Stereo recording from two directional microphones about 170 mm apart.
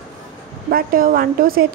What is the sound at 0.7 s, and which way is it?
Speech, 60° right (ahead or behind).